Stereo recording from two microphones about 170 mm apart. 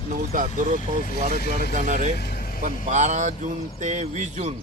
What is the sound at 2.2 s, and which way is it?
Vehicle, 65° left (ahead or behind).